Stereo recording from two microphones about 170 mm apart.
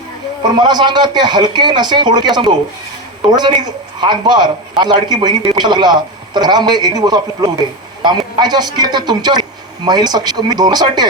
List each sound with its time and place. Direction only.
0.5 s a man's voice: 25° right (ahead or behind)
3.2 s a man's voice: 25° right (ahead or behind)